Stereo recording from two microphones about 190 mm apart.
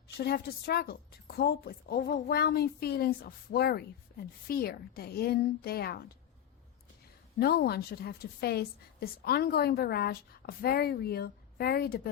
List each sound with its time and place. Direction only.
0.2 s a woman's voice: 55° left (ahead or behind)
7.3 s a woman's voice: 55° left (ahead or behind)